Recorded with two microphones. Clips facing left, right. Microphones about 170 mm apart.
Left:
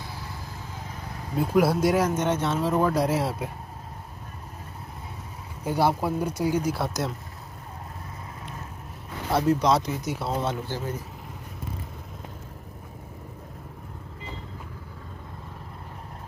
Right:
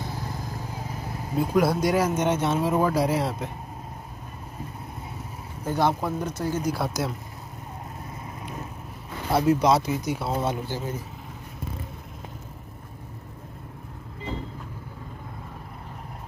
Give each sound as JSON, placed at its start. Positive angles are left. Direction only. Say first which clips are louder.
{"t": 0.0, "sound": "vehicle", "louder": "right 5 dB", "side_deg": -45}
{"t": 1.3, "sound": "speech", "louder": "even", "side_deg": 5}
{"t": 2.1, "sound": "speech", "louder": "right 2 dB", "side_deg": -15}
{"t": 5.6, "sound": "speech", "louder": "even", "side_deg": 10}
{"t": 9.3, "sound": "speech", "louder": "right 1 dB", "side_deg": -5}